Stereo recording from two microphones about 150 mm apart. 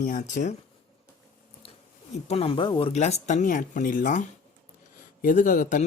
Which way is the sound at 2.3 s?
40° left (ahead or behind).